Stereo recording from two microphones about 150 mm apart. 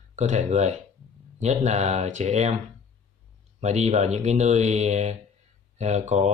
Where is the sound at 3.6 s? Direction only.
50° right (ahead or behind).